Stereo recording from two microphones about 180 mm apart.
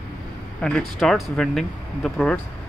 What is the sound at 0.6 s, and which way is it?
Speech, 5° left (ahead or behind).